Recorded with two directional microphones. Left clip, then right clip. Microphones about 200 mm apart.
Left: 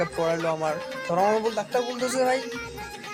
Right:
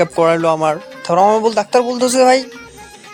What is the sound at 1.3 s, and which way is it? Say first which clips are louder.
Speech: right 12 dB; 50° right (ahead or behind).